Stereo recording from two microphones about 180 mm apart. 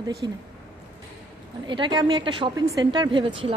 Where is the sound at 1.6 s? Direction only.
25° right (ahead or behind).